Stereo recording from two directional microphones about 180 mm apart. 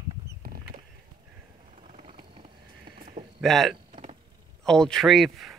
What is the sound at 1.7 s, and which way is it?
Vehicle, 40° right (ahead or behind).